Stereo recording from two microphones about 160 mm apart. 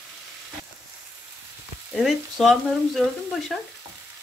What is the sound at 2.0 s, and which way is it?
Speech, centre (ahead or behind).